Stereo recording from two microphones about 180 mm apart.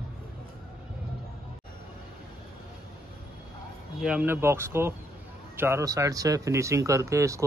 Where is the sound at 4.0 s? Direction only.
5° right (ahead or behind).